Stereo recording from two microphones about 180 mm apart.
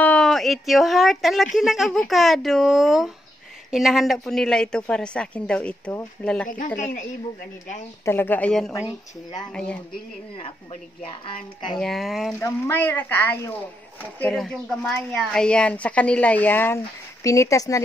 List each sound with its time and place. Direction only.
0.0 s speech: 5° left (ahead or behind)
6.8 s a woman's voice: 45° left (ahead or behind)
8.0 s a woman's voice: 10° left (ahead or behind)
11.0 s speech: 30° left (ahead or behind)
11.8 s speech: centre (ahead or behind)
12.4 s a woman's voice: 15° left (ahead or behind)